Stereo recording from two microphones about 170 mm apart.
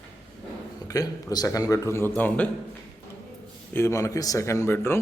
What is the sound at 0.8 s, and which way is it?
A man's voice, 20° left (ahead or behind).